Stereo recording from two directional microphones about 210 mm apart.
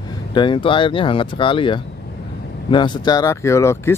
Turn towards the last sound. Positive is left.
turn(degrees=15)  # may be behind; listen again after turning